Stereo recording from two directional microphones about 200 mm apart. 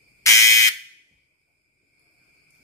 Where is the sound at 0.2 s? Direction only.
15° left (ahead or behind).